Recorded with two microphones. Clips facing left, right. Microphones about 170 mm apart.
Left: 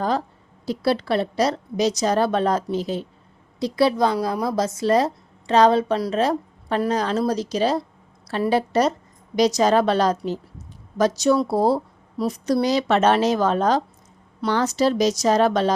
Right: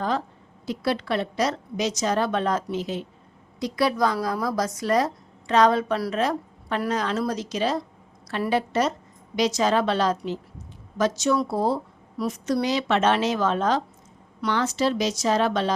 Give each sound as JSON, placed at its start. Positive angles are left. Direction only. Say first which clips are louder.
{"t": 0.6, "sound": "a woman's voice", "louder": "left 4 dB", "side_deg": 35}